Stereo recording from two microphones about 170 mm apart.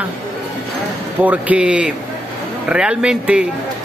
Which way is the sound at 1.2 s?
10° right (ahead or behind).